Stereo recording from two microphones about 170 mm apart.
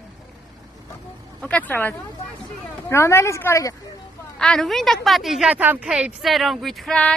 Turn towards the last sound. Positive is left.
turn(degrees=5)  # may be behind; listen again after turning